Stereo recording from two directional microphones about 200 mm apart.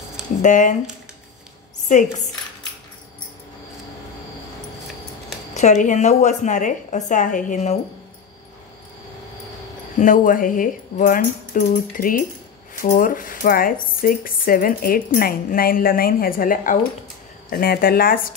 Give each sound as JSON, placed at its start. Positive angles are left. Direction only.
{"t": 0.4, "sound": "speech", "side_deg": 40}
{"t": 1.9, "sound": "speech", "side_deg": 40}
{"t": 5.5, "sound": "speech", "side_deg": 35}
{"t": 9.9, "sound": "speech", "side_deg": 40}